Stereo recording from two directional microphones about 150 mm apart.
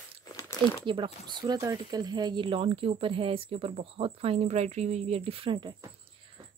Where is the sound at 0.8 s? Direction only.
30° right (ahead or behind).